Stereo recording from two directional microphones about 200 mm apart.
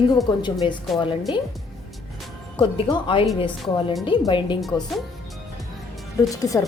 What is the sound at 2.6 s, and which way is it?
Speech, 25° left (ahead or behind).